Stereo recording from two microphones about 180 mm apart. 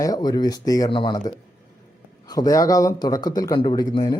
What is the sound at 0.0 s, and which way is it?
A man's voice, 20° left (ahead or behind).